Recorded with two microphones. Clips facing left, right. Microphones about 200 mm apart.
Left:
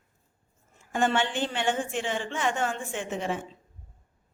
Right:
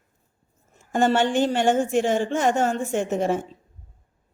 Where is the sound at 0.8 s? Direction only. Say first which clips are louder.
Right 6 dB; 40° right (ahead or behind).